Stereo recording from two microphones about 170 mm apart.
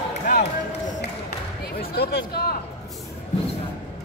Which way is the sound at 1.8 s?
70° left (ahead or behind).